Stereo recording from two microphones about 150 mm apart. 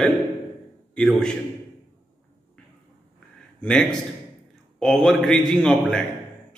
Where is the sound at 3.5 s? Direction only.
5° left (ahead or behind).